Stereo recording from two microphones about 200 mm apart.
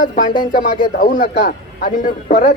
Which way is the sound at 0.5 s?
45° left (ahead or behind).